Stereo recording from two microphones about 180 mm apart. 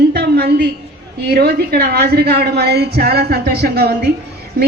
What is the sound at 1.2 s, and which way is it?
Speech, 65° right (ahead or behind).